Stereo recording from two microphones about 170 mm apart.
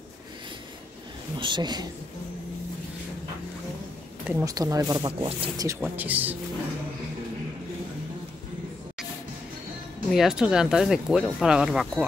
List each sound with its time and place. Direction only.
1.4 s speech: 25° right (ahead or behind)
4.3 s speech: 15° right (ahead or behind)
5.7 s speech: 10° right (ahead or behind)
10.0 s speech: centre (ahead or behind)